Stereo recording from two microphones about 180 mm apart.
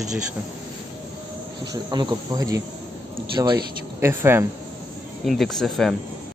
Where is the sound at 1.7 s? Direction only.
20° right (ahead or behind).